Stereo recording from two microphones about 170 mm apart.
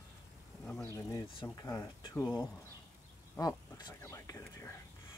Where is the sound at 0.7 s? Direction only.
5° left (ahead or behind).